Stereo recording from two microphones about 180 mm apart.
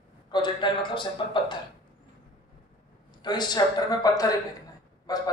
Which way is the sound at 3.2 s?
25° left (ahead or behind).